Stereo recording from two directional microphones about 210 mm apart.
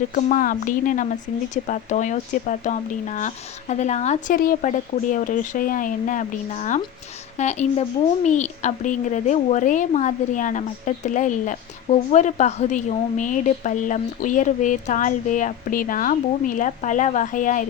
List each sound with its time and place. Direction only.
0.1 s speech: 40° left (ahead or behind)